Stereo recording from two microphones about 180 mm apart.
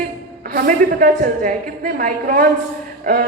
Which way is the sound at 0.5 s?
50° right (ahead or behind).